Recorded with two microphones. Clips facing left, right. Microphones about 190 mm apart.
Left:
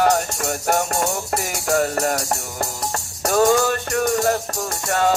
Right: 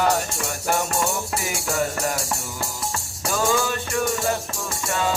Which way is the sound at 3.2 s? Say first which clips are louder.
Left 6 dB; 55° left (ahead or behind).